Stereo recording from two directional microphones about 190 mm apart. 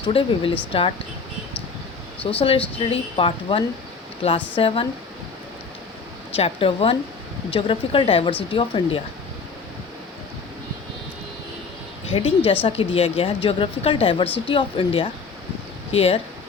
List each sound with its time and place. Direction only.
0.0 s a woman's voice: 30° left (ahead or behind)
2.3 s a woman's voice: 25° left (ahead or behind)
6.3 s a woman's voice: 30° left (ahead or behind)
12.0 s a woman's voice: 30° left (ahead or behind)